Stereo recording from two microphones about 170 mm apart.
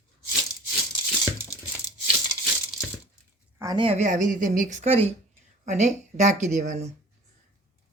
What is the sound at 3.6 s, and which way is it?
A woman's voice, 25° right (ahead or behind).